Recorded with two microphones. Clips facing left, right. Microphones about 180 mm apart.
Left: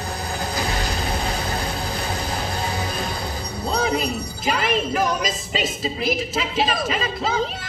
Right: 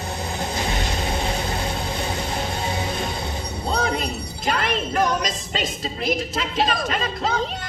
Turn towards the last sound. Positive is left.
turn(degrees=5)  # may be behind; listen again after turning